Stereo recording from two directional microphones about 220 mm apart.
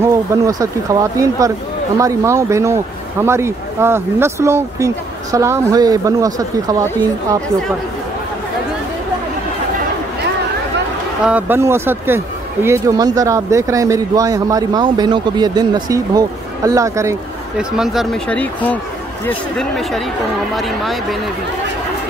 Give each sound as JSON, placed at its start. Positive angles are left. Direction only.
{"t": 0.0, "sound": "speech", "side_deg": -15}
{"t": 11.2, "sound": "speech", "side_deg": -10}
{"t": 17.7, "sound": "speech", "side_deg": 0}